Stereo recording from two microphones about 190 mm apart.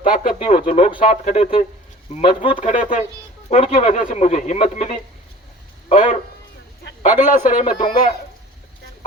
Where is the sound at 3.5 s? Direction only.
35° left (ahead or behind).